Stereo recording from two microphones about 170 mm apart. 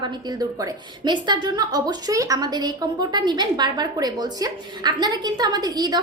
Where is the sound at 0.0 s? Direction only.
25° right (ahead or behind).